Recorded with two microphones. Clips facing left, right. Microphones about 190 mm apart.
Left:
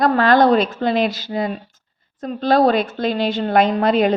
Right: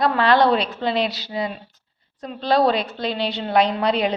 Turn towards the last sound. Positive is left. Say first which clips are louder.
# left 5 dB
turn(degrees=50)  # may be behind; listen again after turning